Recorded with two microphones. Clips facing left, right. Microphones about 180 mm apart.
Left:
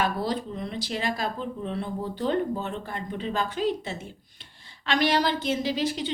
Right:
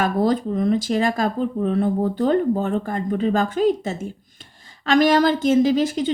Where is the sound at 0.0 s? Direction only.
45° right (ahead or behind).